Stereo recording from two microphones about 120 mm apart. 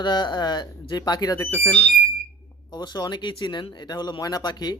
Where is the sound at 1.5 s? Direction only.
15° left (ahead or behind).